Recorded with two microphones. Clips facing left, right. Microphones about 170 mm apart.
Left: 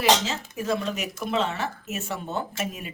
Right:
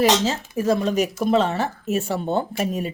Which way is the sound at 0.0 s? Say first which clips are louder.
Right 4 dB; 40° right (ahead or behind).